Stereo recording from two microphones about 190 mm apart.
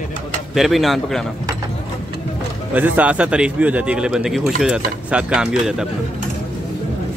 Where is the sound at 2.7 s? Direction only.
10° right (ahead or behind).